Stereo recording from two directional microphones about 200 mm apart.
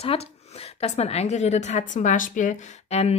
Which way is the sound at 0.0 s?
30° left (ahead or behind).